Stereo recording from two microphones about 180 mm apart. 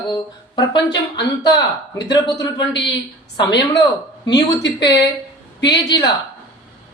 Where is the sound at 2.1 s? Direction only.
25° left (ahead or behind).